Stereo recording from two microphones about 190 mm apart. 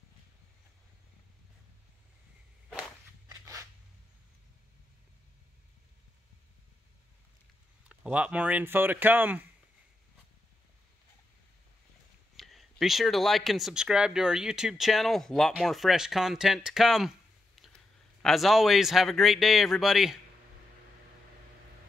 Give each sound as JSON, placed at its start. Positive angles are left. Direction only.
{"t": 3.3, "sound": "a sound", "side_deg": -15}
{"t": 7.9, "sound": "speech", "side_deg": -5}
{"t": 12.4, "sound": "speech", "side_deg": 0}
{"t": 18.2, "sound": "speech", "side_deg": 0}